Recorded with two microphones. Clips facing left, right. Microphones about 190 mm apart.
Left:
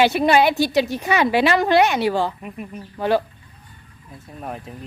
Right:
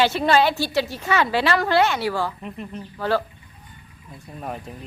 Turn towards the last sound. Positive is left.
turn(degrees=0)  # may be behind; listen again after turning